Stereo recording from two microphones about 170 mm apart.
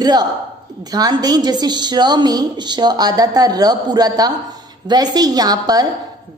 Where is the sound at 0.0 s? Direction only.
25° right (ahead or behind).